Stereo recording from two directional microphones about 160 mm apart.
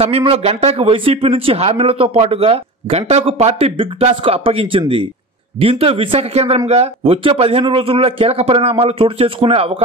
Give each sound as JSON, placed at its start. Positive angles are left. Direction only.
{"t": 0.0, "sound": "speech", "side_deg": -35}